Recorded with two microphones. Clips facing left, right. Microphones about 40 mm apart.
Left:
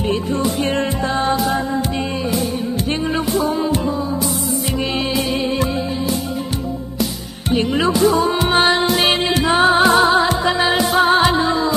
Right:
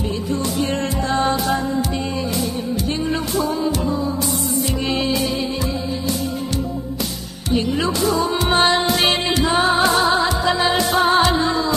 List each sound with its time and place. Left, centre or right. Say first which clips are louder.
1.1 s music: even; centre
7.5 s music: left 3 dB; left
8.5 s music: right 1 dB; centre
9.4 s music: left 4 dB; centre